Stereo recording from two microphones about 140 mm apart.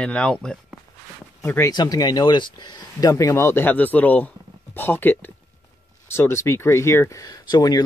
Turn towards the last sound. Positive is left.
turn(degrees=30)  # may be behind; listen again after turning